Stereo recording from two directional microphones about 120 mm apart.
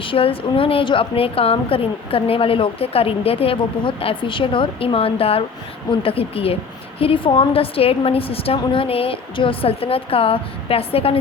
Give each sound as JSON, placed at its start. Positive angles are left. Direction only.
{"t": 0.0, "sound": "a woman's voice", "side_deg": 50}